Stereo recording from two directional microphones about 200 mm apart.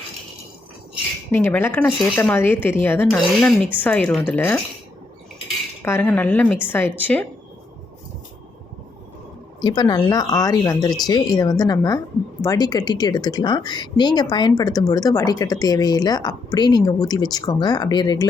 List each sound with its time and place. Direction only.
1.3 s speech: 10° left (ahead or behind)
5.8 s speech: 10° left (ahead or behind)
9.6 s a woman's voice: 20° left (ahead or behind)